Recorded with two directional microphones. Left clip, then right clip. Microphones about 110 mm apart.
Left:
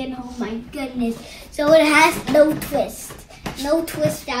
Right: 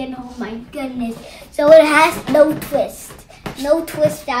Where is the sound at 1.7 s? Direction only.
45° right (ahead or behind).